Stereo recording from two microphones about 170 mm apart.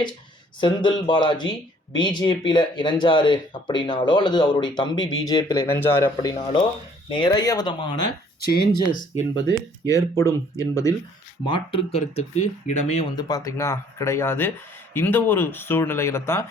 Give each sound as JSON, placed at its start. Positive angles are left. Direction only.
{"t": 0.6, "sound": "speech", "side_deg": 25}
{"t": 8.4, "sound": "speech", "side_deg": 65}
{"t": 8.9, "sound": "speech", "side_deg": 50}
{"t": 9.8, "sound": "speech", "side_deg": 20}
{"t": 11.4, "sound": "speech", "side_deg": 30}
{"t": 13.1, "sound": "speech", "side_deg": 25}